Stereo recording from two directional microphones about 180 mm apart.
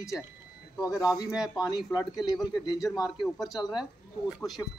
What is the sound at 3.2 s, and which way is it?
Speech, centre (ahead or behind).